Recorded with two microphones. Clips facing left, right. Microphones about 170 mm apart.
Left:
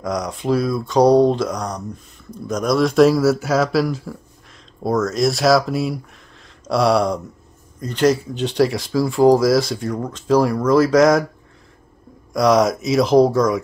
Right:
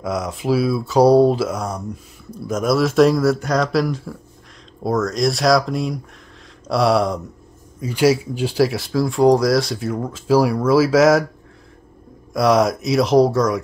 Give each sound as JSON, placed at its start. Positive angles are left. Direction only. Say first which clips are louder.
{"t": 0.0, "sound": "speech", "louder": "even", "side_deg": 0}
{"t": 12.3, "sound": "speech", "louder": "left 1 dB", "side_deg": 0}